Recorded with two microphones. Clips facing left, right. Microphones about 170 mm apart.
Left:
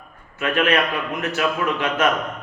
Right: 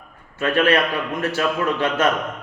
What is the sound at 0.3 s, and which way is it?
A man's voice, 35° right (ahead or behind).